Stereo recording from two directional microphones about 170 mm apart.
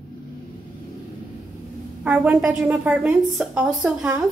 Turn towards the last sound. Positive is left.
turn(degrees=-5)  # may be behind; listen again after turning